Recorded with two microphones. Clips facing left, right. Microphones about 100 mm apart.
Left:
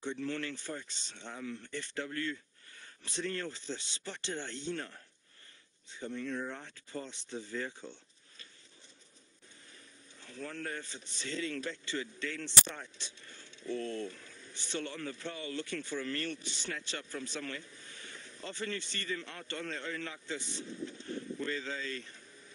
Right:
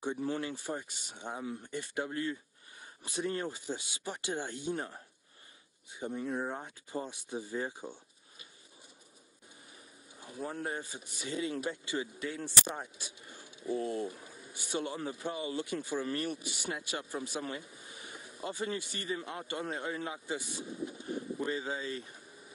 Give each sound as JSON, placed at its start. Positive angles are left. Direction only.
{"t": 0.2, "sound": "a man's voice", "side_deg": -15}
{"t": 10.1, "sound": "a man's voice", "side_deg": -15}